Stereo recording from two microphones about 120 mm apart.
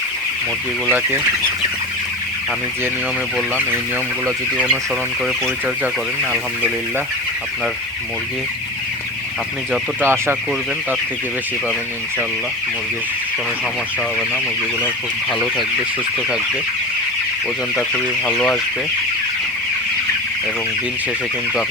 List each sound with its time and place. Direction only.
0.9 s speech: 15° right (ahead or behind)
4.5 s speech: 10° right (ahead or behind)
10.0 s speech: 20° right (ahead or behind)
15.3 s speech: centre (ahead or behind)
18.3 s speech: centre (ahead or behind)